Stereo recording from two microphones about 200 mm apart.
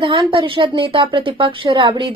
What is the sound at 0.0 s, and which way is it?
A woman's voice, 25° right (ahead or behind).